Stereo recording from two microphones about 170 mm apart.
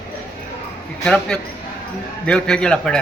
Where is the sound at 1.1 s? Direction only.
5° left (ahead or behind).